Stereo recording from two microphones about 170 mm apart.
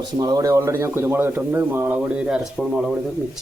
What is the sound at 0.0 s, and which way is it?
A man's voice, 25° right (ahead or behind).